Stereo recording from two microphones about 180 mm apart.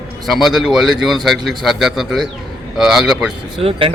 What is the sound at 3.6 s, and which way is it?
Speech, 30° right (ahead or behind).